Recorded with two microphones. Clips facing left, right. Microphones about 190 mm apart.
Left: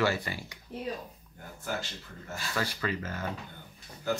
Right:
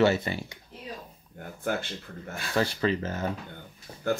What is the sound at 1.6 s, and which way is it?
Speech, 55° right (ahead or behind).